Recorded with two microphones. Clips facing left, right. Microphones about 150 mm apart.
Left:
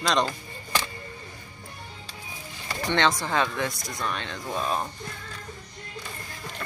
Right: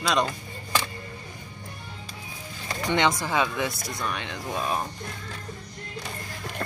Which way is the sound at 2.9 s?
10° right (ahead or behind).